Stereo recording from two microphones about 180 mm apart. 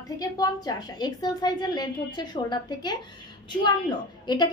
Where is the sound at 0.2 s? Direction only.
20° left (ahead or behind).